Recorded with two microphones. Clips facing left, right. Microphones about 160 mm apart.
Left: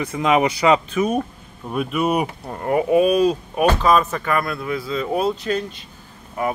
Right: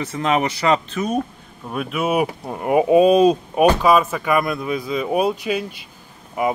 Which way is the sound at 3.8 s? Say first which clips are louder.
Right 1 dB; 10° right (ahead or behind).